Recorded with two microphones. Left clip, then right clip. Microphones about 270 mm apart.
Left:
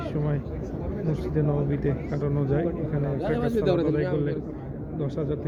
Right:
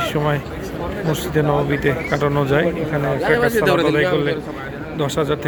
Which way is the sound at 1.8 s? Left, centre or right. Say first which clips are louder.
Right 11 dB; right.